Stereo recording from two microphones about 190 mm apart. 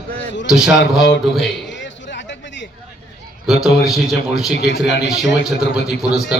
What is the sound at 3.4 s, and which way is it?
A man's voice, centre (ahead or behind).